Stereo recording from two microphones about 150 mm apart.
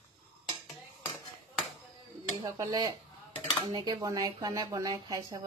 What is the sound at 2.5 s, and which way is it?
Speech, 25° right (ahead or behind).